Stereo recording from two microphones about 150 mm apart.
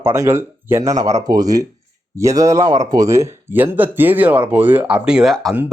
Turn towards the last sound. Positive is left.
turn(degrees=0)  # may be behind; listen again after turning